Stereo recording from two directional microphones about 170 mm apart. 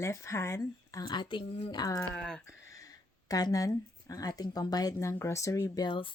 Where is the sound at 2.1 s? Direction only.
5° left (ahead or behind).